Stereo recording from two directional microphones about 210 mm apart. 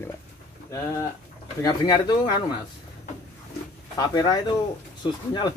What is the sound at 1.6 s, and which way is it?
Speech, 20° left (ahead or behind).